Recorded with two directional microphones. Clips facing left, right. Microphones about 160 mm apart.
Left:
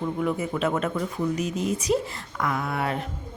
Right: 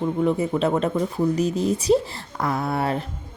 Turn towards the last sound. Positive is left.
turn(degrees=-35)  # may be behind; listen again after turning